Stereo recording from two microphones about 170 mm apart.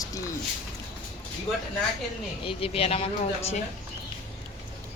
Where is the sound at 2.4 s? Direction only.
35° left (ahead or behind).